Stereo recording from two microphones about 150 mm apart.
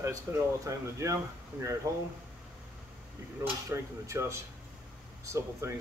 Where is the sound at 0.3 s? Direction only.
15° right (ahead or behind).